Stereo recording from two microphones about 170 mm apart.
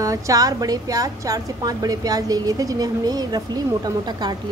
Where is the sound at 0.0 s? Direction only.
20° right (ahead or behind).